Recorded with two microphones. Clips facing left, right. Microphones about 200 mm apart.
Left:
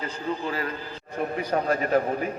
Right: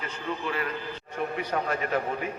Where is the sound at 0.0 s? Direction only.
35° left (ahead or behind).